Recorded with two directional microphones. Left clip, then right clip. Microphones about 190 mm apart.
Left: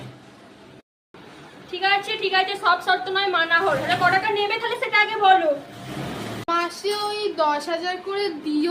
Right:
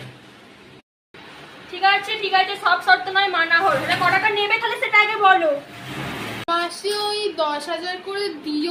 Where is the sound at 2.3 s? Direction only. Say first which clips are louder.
Right 2 dB; 20° left (ahead or behind).